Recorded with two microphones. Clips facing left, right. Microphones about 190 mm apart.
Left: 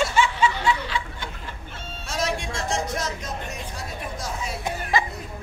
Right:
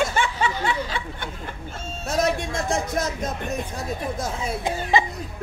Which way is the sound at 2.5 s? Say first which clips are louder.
Right 2 dB; 55° right (ahead or behind).